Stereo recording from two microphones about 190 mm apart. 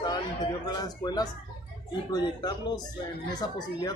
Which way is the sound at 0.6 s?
20° left (ahead or behind).